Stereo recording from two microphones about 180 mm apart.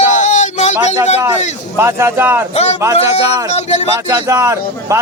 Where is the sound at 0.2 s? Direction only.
40° left (ahead or behind).